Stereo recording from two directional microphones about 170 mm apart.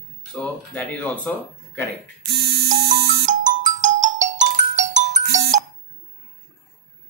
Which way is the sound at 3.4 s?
50° right (ahead or behind).